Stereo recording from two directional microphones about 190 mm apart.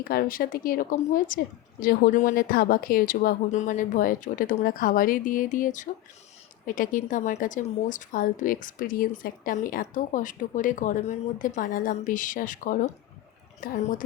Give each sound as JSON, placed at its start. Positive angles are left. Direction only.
{"t": 0.0, "sound": "a woman's voice", "side_deg": 50}